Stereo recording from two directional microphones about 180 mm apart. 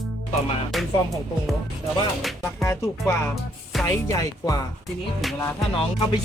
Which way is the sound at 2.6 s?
15° left (ahead or behind).